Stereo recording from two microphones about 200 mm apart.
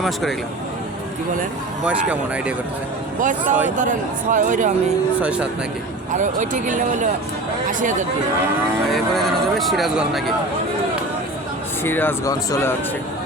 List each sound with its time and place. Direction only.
0.0 s speech: centre (ahead or behind)
1.8 s speech: 5° right (ahead or behind)
3.2 s speech: 40° right (ahead or behind)
5.2 s speech: 5° right (ahead or behind)
6.1 s speech: 35° right (ahead or behind)
8.9 s speech: centre (ahead or behind)
11.8 s speech: 10° left (ahead or behind)